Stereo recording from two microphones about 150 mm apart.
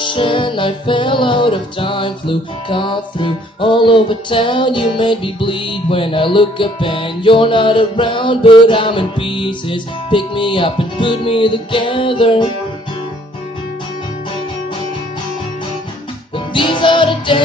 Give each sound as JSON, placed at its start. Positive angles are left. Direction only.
{"t": 0.0, "sound": "music", "side_deg": 35}
{"t": 16.3, "sound": "music", "side_deg": 35}